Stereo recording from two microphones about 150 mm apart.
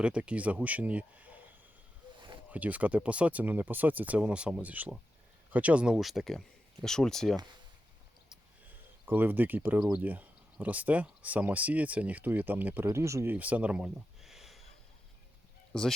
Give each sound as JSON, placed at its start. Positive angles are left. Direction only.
{"t": 0.0, "sound": "speech", "side_deg": -5}
{"t": 2.1, "sound": "a sound", "side_deg": -30}
{"t": 2.5, "sound": "speech", "side_deg": -10}
{"t": 9.0, "sound": "speech", "side_deg": -10}
{"t": 15.7, "sound": "speech", "side_deg": 5}